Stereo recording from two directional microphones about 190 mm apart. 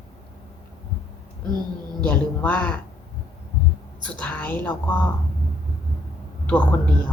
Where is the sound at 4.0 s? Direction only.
5° left (ahead or behind).